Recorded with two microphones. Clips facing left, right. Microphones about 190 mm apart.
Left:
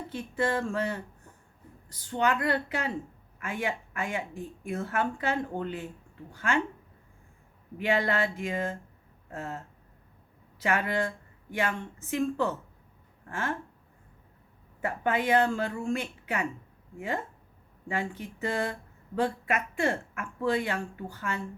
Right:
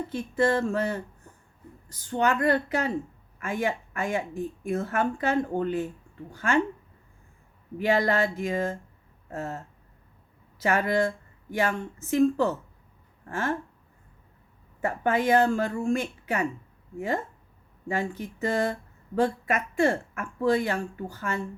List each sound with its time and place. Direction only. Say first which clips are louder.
0.1 s a woman's voice: right 4 dB; 45° right (ahead or behind)
7.8 s speech: right 3 dB; 40° right (ahead or behind)
10.6 s speech: right 4 dB; 40° right (ahead or behind)
14.8 s a woman's voice: right 3 dB; 45° right (ahead or behind)
17.8 s speech: right 3 dB; 40° right (ahead or behind)